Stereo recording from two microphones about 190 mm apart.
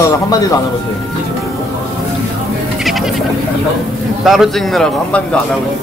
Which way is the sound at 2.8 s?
Centre (ahead or behind).